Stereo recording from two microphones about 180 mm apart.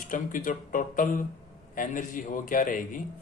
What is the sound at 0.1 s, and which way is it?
Speech, 50° left (ahead or behind).